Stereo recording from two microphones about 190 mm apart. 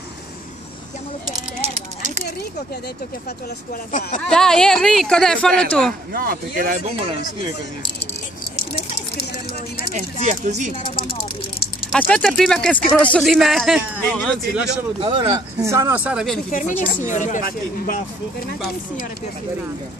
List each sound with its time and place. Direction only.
3.9 s speech: 40° left (ahead or behind)
4.2 s speech: 5° left (ahead or behind)
6.1 s speech: 50° right (ahead or behind)
10.2 s speech: 40° right (ahead or behind)
11.0 s speech: 30° left (ahead or behind)
11.9 s speech: 5° left (ahead or behind)
15.0 s speech: 25° right (ahead or behind); by 16.3 s 5° right (ahead or behind)
16.4 s speech: 45° left (ahead or behind)